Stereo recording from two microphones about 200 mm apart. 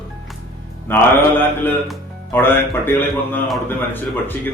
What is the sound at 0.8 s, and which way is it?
Speech, 10° left (ahead or behind).